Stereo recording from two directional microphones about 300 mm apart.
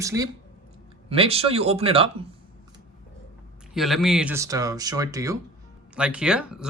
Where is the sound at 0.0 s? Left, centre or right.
Centre.